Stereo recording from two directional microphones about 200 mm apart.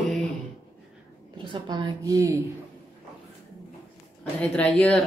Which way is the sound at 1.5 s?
20° right (ahead or behind).